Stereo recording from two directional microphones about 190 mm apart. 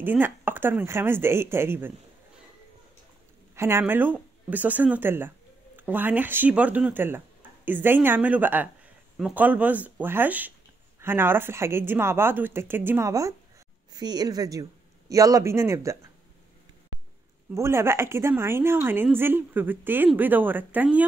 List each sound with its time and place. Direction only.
0.0 s a woman's voice: 10° right (ahead or behind)
3.5 s a woman's voice: 15° right (ahead or behind)
17.6 s a woman's voice: 15° right (ahead or behind)